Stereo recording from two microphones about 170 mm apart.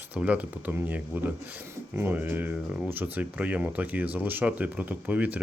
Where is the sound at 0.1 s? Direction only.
10° right (ahead or behind).